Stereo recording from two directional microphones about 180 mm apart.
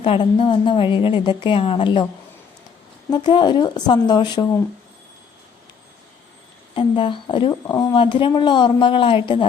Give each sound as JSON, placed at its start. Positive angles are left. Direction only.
{"t": 0.0, "sound": "speech", "side_deg": 30}
{"t": 3.1, "sound": "speech", "side_deg": 25}
{"t": 6.7, "sound": "speech", "side_deg": 30}